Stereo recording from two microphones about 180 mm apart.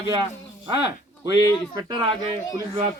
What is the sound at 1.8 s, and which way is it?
Speech, 25° right (ahead or behind).